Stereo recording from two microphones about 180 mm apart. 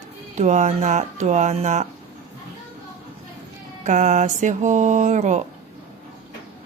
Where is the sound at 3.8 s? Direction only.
45° right (ahead or behind).